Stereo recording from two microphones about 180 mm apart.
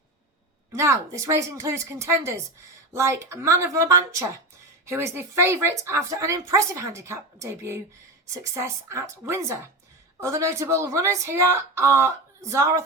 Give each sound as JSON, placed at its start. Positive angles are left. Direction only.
{"t": 0.7, "sound": "a woman's voice", "side_deg": -15}